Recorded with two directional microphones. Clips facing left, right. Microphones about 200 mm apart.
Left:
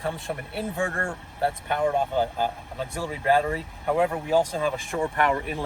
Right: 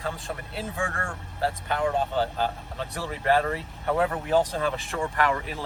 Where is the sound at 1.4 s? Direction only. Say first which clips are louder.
Left 2 dB; 15° left (ahead or behind).